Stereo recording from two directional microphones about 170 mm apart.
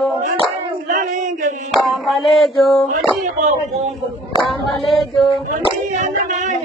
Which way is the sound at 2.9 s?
45° right (ahead or behind).